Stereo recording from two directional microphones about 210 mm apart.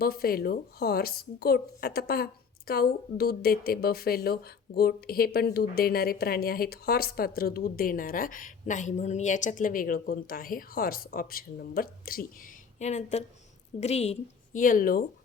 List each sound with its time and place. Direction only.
0.0 s a woman's voice: 45° left (ahead or behind)